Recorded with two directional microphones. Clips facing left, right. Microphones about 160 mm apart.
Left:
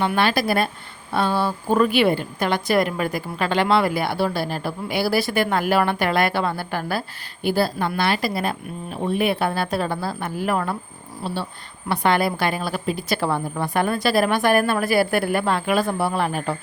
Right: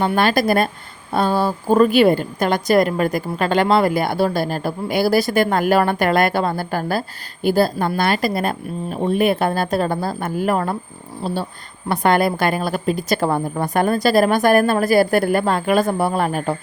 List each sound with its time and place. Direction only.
0.2 s a woman's voice: 45° right (ahead or behind)